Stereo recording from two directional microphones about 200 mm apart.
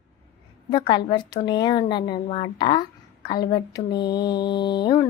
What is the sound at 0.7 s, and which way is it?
A woman's voice, 20° left (ahead or behind).